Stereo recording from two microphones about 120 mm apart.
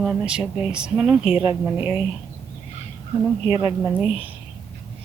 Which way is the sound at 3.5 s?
30° right (ahead or behind).